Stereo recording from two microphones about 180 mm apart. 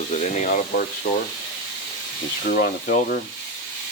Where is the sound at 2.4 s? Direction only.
50° left (ahead or behind).